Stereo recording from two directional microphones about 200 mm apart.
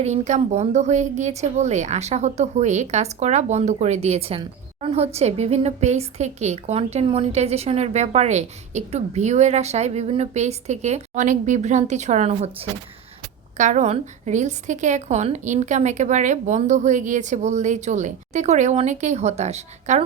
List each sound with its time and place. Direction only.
0.0 s a woman's voice: 35° right (ahead or behind)